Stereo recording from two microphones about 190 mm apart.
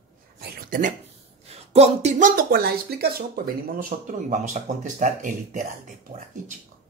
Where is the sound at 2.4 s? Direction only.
50° right (ahead or behind).